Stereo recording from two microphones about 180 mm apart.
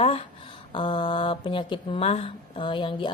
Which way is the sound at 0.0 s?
35° left (ahead or behind).